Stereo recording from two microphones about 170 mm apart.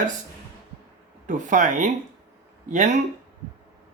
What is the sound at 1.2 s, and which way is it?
Speech, 50° right (ahead or behind).